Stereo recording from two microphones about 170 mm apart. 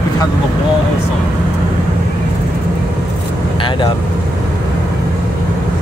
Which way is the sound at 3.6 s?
30° left (ahead or behind).